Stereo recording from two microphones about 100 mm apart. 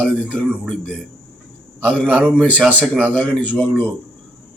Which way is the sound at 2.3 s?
15° left (ahead or behind).